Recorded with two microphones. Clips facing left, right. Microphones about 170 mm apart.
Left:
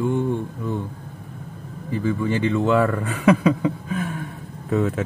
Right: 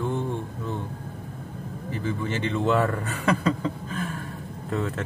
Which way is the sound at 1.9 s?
10° left (ahead or behind).